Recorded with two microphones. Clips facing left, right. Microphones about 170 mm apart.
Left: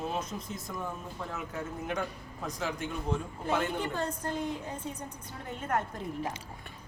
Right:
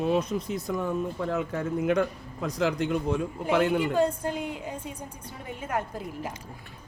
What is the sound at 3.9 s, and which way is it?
A woman's voice, 10° right (ahead or behind).